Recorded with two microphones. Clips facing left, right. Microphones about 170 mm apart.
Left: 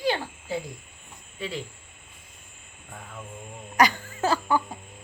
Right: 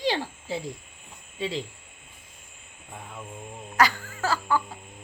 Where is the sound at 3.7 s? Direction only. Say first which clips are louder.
Left 1 dB; 20° left (ahead or behind).